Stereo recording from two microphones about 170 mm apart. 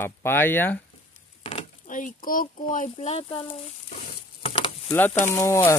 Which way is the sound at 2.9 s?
35° left (ahead or behind).